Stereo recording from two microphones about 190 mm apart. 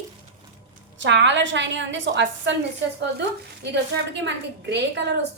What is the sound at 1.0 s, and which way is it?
A woman's voice, 70° right (ahead or behind).